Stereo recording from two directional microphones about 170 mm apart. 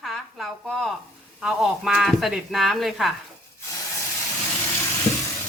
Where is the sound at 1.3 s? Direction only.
Centre (ahead or behind).